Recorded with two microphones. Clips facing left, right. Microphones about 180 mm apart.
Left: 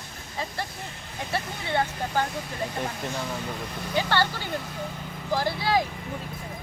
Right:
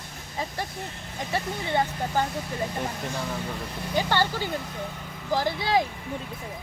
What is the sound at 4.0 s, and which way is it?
Speech, 15° right (ahead or behind).